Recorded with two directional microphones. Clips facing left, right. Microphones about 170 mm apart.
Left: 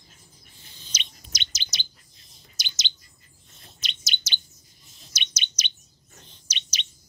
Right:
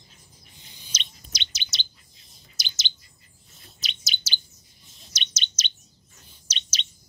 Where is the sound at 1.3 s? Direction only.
45° left (ahead or behind).